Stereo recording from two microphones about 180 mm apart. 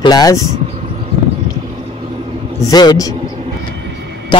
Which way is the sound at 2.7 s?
20° left (ahead or behind).